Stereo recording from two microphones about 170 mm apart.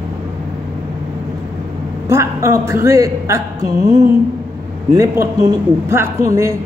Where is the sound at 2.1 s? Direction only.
15° right (ahead or behind).